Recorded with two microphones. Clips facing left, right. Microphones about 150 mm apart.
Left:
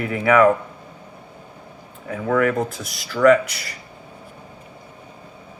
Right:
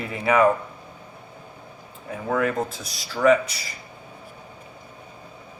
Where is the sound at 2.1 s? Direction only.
60° left (ahead or behind).